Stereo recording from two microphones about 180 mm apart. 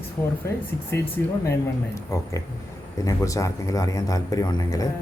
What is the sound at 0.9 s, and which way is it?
Speech, 15° left (ahead or behind).